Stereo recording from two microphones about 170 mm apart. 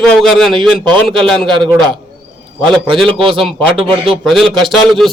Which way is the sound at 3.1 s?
30° right (ahead or behind).